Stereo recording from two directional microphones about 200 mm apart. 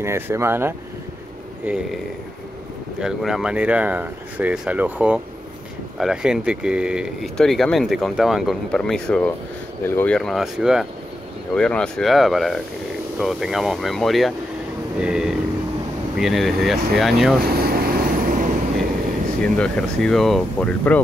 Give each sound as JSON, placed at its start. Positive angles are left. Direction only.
{"t": 0.0, "sound": "speech", "side_deg": -15}
{"t": 3.0, "sound": "speech", "side_deg": 0}
{"t": 17.5, "sound": "vehicle", "side_deg": -50}
{"t": 19.4, "sound": "speech", "side_deg": 5}